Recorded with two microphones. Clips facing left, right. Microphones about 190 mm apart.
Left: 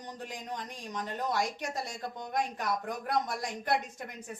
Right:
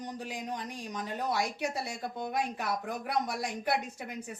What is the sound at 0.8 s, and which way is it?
A woman's voice, centre (ahead or behind).